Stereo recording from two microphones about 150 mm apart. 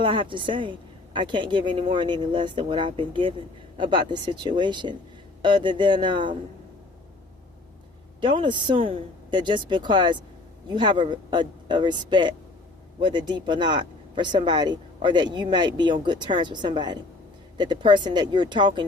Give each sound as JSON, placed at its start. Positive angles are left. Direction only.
{"t": 0.0, "sound": "a woman's voice", "side_deg": -35}
{"t": 8.2, "sound": "a woman's voice", "side_deg": -30}